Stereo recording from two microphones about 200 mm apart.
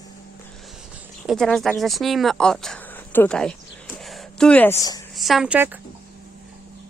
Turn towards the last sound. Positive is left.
turn(degrees=-5)  # may be behind; listen again after turning